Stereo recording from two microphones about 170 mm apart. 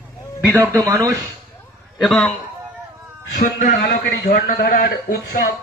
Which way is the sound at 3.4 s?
55° left (ahead or behind).